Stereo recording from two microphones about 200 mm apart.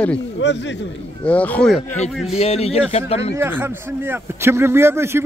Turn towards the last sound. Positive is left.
turn(degrees=-10)  # may be behind; listen again after turning